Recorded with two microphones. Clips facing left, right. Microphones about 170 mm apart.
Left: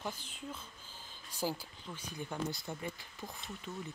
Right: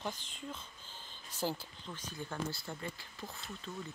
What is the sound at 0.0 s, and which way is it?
Speech, 5° left (ahead or behind).